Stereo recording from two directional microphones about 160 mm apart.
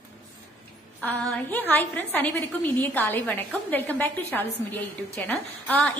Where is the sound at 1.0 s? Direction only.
10° left (ahead or behind).